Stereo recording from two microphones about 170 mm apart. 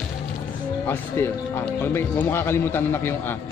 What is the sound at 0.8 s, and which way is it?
Speech, 15° left (ahead or behind).